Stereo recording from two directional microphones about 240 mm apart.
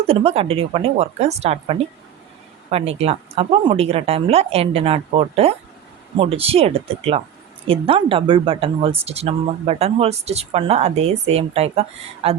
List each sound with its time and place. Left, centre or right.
0.1 s speech: right